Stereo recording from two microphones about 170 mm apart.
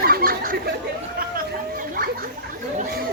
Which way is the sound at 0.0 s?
60° right (ahead or behind).